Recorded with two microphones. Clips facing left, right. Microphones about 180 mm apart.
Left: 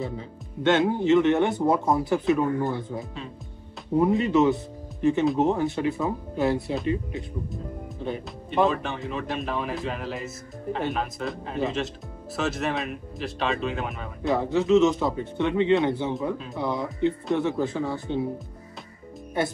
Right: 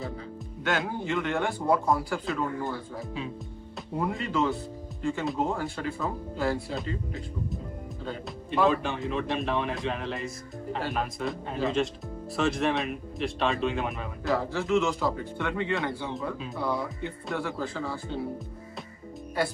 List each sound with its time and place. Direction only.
0.7 s speech: 25° left (ahead or behind)
8.6 s a man's voice: centre (ahead or behind)
14.3 s speech: 20° left (ahead or behind)